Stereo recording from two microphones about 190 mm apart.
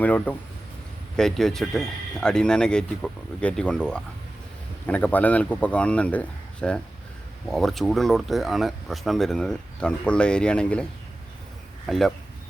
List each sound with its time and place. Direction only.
0.0 s a man's voice: 10° left (ahead or behind)
11.9 s speech: centre (ahead or behind)